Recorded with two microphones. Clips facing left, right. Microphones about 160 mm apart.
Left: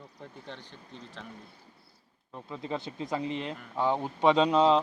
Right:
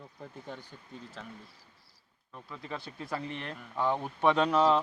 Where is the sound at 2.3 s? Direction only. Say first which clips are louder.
Left 6 dB; 25° left (ahead or behind).